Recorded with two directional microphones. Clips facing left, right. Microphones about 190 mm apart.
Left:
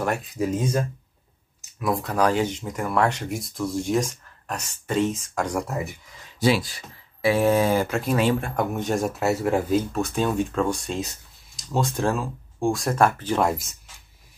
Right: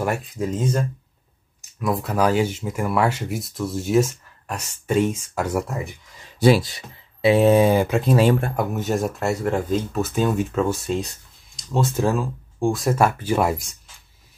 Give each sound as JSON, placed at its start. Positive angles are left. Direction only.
{"t": 0.0, "sound": "speech", "side_deg": -5}
{"t": 0.4, "sound": "speech", "side_deg": 5}
{"t": 6.6, "sound": "speech", "side_deg": -20}
{"t": 8.5, "sound": "speech", "side_deg": -5}